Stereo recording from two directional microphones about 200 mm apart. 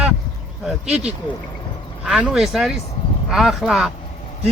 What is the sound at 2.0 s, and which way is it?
Speech, 5° right (ahead or behind).